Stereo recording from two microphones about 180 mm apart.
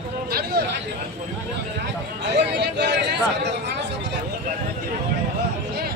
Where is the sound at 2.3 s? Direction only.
70° right (ahead or behind).